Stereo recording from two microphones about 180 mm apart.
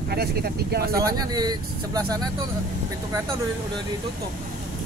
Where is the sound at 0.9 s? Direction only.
20° right (ahead or behind).